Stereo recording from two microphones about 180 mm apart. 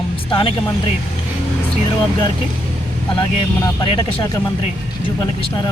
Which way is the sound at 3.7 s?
25° left (ahead or behind).